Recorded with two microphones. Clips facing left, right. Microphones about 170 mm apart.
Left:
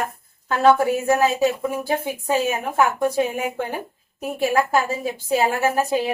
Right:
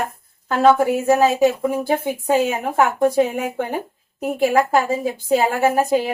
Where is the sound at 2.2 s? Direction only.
20° right (ahead or behind).